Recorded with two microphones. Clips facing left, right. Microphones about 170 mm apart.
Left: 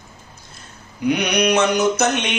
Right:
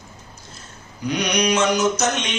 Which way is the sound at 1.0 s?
60° left (ahead or behind).